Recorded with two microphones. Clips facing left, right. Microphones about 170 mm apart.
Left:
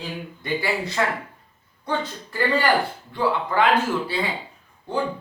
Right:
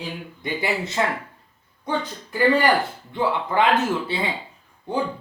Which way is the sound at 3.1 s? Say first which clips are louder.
Even; 20° right (ahead or behind).